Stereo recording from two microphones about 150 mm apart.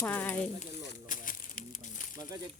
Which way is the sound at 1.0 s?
65° left (ahead or behind).